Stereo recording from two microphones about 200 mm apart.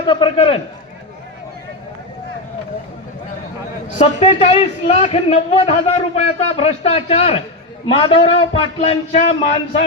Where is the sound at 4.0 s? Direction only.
30° left (ahead or behind).